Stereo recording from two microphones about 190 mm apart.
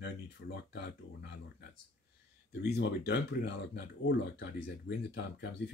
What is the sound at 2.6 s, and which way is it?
Speech, 60° left (ahead or behind).